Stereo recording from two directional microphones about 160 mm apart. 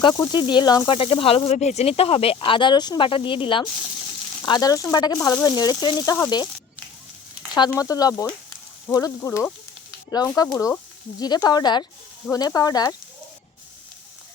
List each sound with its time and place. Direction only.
0.0 s speech: 25° left (ahead or behind)
7.8 s speech: 25° left (ahead or behind)